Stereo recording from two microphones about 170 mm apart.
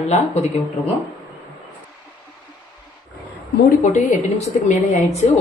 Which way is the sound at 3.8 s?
45° left (ahead or behind).